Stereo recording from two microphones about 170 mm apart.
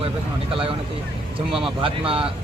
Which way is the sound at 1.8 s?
30° right (ahead or behind).